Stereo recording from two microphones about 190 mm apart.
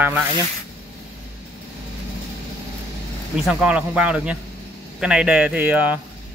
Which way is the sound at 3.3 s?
5° right (ahead or behind).